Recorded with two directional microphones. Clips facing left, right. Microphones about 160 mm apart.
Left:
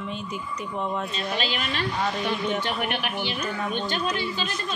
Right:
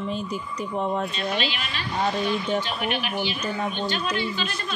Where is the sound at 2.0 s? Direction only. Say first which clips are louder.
Right 5 dB; 35° right (ahead or behind).